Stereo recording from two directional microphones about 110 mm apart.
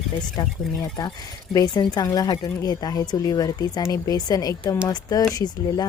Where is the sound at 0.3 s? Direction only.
35° left (ahead or behind).